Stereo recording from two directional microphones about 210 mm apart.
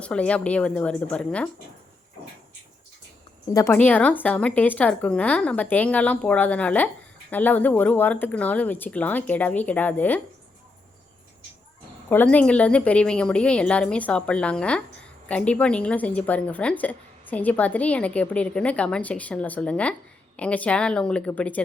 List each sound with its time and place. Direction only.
0.0 s a woman's voice: 5° left (ahead or behind)
3.5 s speech: 10° left (ahead or behind)
12.0 s a woman's voice: 10° left (ahead or behind)